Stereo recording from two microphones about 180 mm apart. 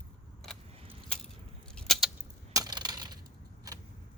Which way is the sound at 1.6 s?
5° left (ahead or behind).